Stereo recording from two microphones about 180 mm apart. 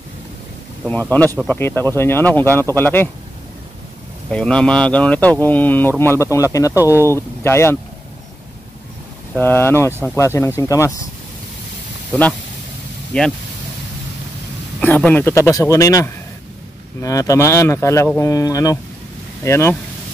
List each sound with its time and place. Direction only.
1.5 s speech: 10° left (ahead or behind)
4.3 s speech: 5° left (ahead or behind)
9.3 s speech: 10° left (ahead or behind)
12.1 s speech: 5° left (ahead or behind)
14.8 s speech: 10° left (ahead or behind)